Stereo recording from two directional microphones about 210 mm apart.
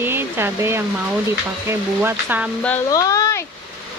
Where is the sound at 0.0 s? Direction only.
10° right (ahead or behind).